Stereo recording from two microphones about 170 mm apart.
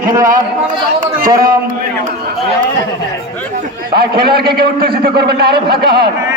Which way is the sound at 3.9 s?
65° right (ahead or behind).